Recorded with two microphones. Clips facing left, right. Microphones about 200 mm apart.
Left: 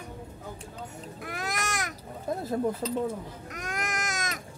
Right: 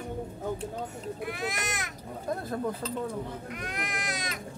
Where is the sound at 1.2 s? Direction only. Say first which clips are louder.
Left 1 dB; 45° left (ahead or behind).